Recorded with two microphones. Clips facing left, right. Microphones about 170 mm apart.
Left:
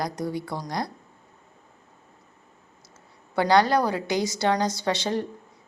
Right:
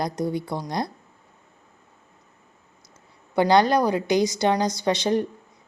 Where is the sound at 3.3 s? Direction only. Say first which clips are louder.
Right 2 dB; 20° right (ahead or behind).